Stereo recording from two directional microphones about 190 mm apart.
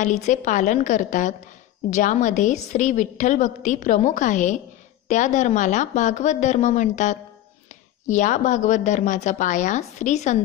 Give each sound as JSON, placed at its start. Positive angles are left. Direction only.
{"t": 0.0, "sound": "a woman's voice", "side_deg": 40}